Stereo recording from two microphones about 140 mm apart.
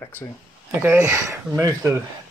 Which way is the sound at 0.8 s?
20° right (ahead or behind).